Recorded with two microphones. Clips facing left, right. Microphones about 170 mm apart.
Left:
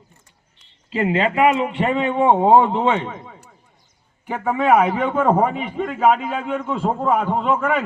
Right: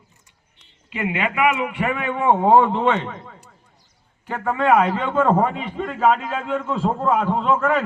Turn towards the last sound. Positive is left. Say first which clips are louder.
# even
turn(degrees=5)  # may be behind; listen again after turning